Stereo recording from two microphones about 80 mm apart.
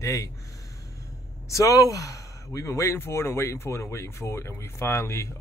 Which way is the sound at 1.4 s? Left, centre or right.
Left.